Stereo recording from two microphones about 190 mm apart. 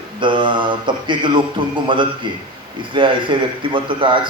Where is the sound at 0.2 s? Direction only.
25° right (ahead or behind).